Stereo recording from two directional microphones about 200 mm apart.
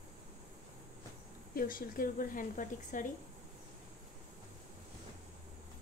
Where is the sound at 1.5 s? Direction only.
45° left (ahead or behind).